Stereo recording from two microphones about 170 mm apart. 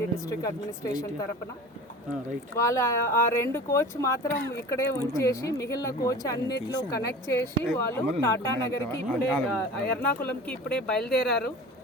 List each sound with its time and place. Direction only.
0.3 s speech: 20° left (ahead or behind)
2.6 s speech: 20° left (ahead or behind)